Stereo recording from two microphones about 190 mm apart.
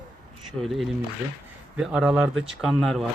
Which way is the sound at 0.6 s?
Centre (ahead or behind).